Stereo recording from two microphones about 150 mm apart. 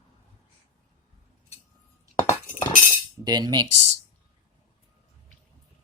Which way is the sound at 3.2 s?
30° right (ahead or behind).